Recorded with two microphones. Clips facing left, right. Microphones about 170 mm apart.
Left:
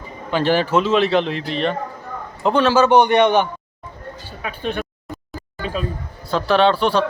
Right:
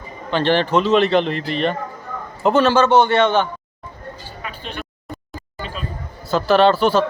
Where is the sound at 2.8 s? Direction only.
15° left (ahead or behind).